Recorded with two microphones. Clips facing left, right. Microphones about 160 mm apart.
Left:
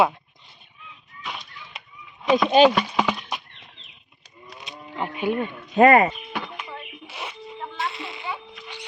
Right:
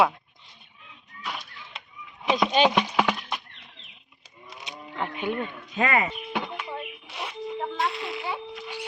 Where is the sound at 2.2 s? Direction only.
15° right (ahead or behind).